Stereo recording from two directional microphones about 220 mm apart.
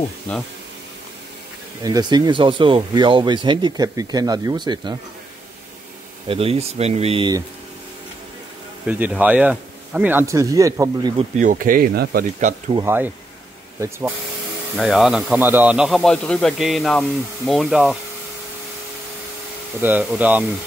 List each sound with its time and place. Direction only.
0.3 s speech: 5° left (ahead or behind)
1.8 s speech: 15° right (ahead or behind)
6.2 s speech: 25° right (ahead or behind)
8.8 s speech: 5° right (ahead or behind)
11.1 s speech: 35° right (ahead or behind)
12.7 s speech: 10° right (ahead or behind)
14.8 s a man's voice: centre (ahead or behind)
19.8 s speech: 5° right (ahead or behind)